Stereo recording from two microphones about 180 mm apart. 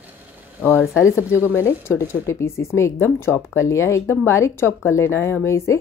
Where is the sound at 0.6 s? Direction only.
10° left (ahead or behind).